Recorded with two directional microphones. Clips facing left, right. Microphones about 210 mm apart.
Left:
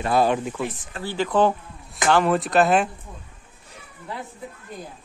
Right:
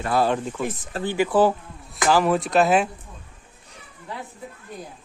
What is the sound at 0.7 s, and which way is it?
Speech, 40° right (ahead or behind).